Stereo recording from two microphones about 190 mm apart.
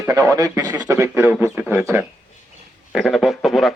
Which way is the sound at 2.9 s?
Centre (ahead or behind).